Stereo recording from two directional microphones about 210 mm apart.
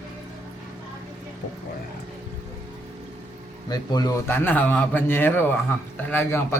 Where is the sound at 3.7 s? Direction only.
20° left (ahead or behind).